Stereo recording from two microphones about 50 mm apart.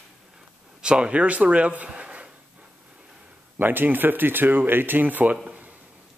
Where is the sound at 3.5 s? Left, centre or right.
Right.